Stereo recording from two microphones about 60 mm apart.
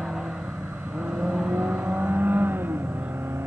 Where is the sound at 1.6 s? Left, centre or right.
Right.